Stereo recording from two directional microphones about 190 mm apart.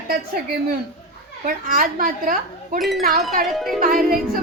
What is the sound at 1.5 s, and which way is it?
A woman's voice, 50° right (ahead or behind).